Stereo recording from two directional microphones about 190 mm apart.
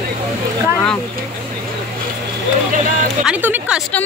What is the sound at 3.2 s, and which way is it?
Speech, 10° right (ahead or behind).